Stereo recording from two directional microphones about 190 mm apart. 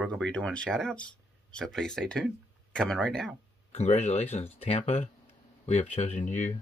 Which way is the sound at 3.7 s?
35° left (ahead or behind).